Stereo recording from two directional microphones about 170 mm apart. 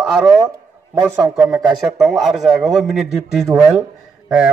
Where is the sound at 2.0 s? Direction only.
Centre (ahead or behind).